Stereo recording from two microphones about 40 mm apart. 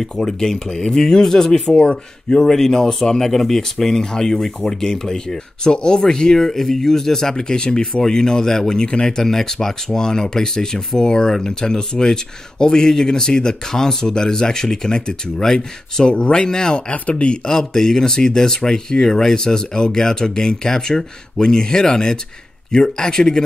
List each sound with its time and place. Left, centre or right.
0.0 s speech: centre
2.4 s speech: centre
17.6 s speech: centre